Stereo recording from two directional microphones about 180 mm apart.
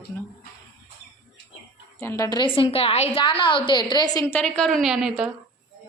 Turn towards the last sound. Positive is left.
turn(degrees=-5)  # may be behind; listen again after turning